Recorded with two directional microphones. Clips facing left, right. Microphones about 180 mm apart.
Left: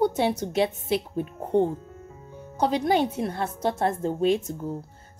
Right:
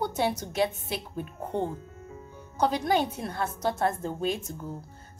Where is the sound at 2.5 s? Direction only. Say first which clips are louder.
Left 3 dB; 25° left (ahead or behind).